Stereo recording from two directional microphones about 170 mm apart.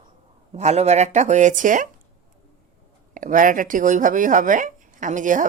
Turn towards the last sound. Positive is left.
turn(degrees=-50)  # may be behind; listen again after turning